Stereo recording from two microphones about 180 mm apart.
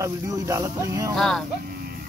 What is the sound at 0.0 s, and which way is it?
Speech, 15° right (ahead or behind).